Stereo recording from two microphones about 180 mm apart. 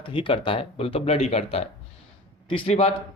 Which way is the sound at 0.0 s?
30° left (ahead or behind).